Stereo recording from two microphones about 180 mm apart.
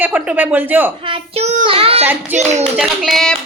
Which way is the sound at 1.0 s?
30° right (ahead or behind).